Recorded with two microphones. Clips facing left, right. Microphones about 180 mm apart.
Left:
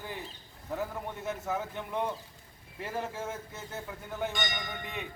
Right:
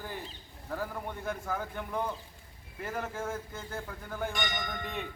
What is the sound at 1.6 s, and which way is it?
Speech, 25° left (ahead or behind).